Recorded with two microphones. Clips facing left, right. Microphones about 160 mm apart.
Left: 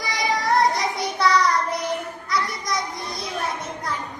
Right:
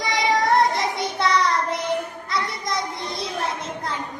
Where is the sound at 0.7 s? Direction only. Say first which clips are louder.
Even; 25° right (ahead or behind).